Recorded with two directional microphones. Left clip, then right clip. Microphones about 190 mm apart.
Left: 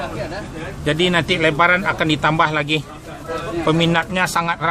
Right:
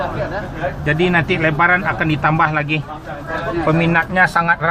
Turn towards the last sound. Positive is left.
turn(degrees=10)  # may be behind; listen again after turning